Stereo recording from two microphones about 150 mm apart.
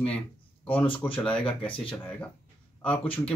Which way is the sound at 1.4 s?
35° left (ahead or behind).